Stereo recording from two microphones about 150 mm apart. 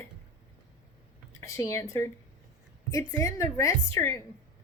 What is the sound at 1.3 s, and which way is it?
A woman's voice, 20° left (ahead or behind).